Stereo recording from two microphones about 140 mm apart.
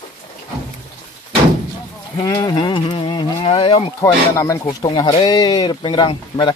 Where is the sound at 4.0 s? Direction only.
20° left (ahead or behind).